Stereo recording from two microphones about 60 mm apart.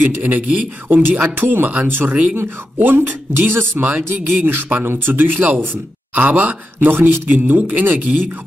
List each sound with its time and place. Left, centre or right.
0.0 s speech: right